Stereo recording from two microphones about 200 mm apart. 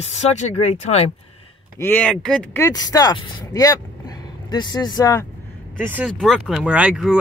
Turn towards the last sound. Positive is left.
turn(degrees=-5)  # may be behind; listen again after turning